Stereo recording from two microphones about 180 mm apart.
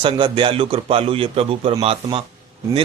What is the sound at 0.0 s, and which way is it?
Speech, 30° right (ahead or behind).